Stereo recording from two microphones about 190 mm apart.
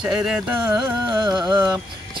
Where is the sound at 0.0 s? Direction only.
5° right (ahead or behind).